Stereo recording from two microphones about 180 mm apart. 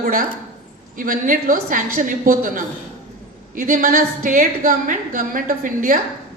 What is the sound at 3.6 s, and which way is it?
Speech, 50° right (ahead or behind).